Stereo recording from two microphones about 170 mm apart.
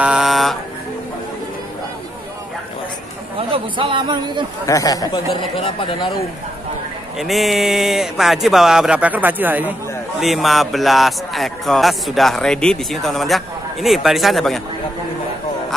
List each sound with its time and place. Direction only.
0.0 s mantra: 5° right (ahead or behind)
3.3 s speech: 35° right (ahead or behind)
4.6 s speech: 20° left (ahead or behind)
7.2 s speech: centre (ahead or behind)